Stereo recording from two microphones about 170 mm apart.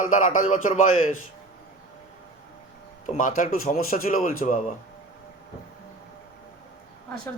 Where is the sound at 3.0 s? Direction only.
50° left (ahead or behind).